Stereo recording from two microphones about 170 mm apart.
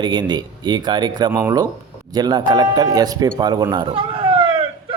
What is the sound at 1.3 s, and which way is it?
Speech, 10° right (ahead or behind).